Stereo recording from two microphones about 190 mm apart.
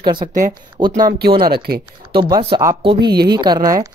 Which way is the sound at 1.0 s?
55° right (ahead or behind).